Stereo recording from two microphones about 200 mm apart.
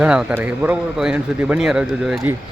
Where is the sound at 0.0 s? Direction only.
5° right (ahead or behind).